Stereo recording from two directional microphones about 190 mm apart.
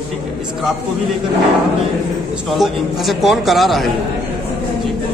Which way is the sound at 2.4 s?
Centre (ahead or behind).